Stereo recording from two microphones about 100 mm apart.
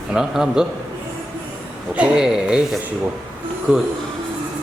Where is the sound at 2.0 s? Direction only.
5° right (ahead or behind).